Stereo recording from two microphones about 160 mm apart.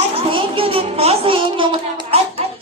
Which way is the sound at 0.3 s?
35° right (ahead or behind).